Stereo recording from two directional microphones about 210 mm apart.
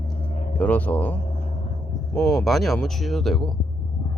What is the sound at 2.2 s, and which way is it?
Speech, centre (ahead or behind).